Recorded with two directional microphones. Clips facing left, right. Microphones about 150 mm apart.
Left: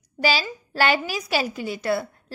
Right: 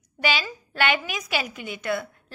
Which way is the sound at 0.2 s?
35° left (ahead or behind).